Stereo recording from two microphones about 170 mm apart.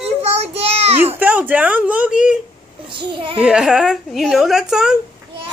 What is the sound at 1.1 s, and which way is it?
Speech, 10° right (ahead or behind).